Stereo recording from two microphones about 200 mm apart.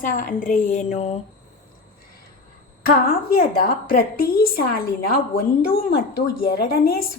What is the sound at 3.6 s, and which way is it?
A woman's voice, 45° left (ahead or behind).